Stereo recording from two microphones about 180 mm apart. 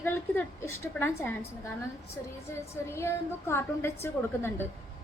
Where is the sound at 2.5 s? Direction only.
15° left (ahead or behind).